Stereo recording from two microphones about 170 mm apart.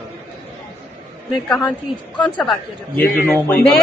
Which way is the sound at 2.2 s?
5° left (ahead or behind).